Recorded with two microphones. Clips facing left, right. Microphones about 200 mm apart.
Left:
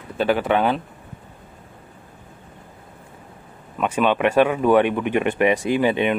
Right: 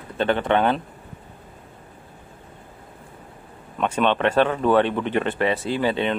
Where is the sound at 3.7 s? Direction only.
10° left (ahead or behind).